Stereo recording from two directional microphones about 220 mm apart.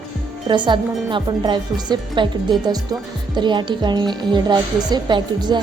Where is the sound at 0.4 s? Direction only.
20° right (ahead or behind).